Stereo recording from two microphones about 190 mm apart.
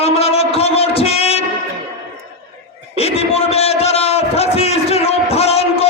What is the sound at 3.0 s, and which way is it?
A man's voice, 30° left (ahead or behind).